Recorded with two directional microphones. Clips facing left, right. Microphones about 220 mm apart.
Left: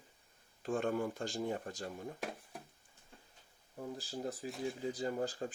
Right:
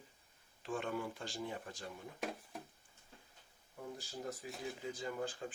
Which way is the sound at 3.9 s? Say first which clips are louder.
Left 4 dB; 35° left (ahead or behind).